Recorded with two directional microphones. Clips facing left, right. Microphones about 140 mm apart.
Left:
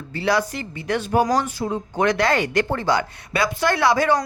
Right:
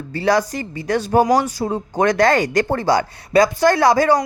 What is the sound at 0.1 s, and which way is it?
Speech, 40° right (ahead or behind).